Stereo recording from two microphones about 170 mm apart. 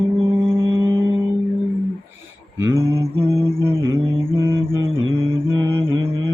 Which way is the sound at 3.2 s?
35° right (ahead or behind).